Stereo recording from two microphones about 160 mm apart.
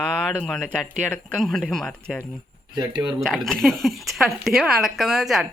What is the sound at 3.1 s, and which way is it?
Speech, centre (ahead or behind).